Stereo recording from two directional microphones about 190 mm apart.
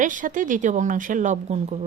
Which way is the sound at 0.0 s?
45° right (ahead or behind).